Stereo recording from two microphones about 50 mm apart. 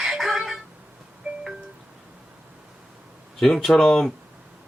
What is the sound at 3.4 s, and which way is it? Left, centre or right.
Speech, centre.